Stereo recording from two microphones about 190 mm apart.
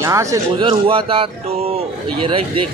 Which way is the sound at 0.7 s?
30° right (ahead or behind).